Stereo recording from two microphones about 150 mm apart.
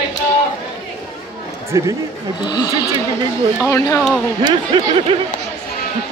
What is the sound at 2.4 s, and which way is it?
Speech, 30° left (ahead or behind).